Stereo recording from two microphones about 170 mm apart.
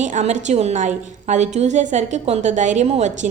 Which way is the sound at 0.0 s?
45° right (ahead or behind).